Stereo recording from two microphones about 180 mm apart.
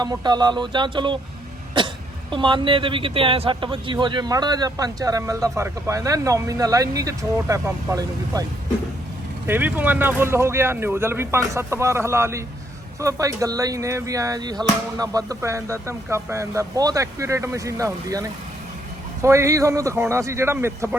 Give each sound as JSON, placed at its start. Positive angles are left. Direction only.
{"t": 0.0, "sound": "speech", "side_deg": -25}
{"t": 2.3, "sound": "speech", "side_deg": -25}
{"t": 9.5, "sound": "speech", "side_deg": -10}